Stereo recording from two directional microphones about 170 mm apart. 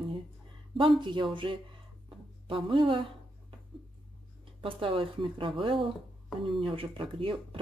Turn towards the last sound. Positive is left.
turn(degrees=-30)  # may be behind; listen again after turning